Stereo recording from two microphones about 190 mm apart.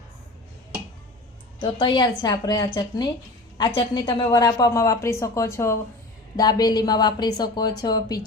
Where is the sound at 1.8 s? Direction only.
25° left (ahead or behind).